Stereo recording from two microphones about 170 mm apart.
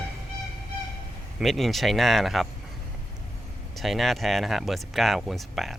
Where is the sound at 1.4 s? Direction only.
Centre (ahead or behind).